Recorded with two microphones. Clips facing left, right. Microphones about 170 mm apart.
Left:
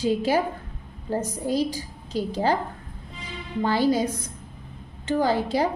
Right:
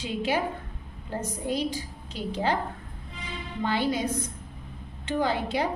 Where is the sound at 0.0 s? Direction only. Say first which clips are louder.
Left 5 dB; 40° left (ahead or behind).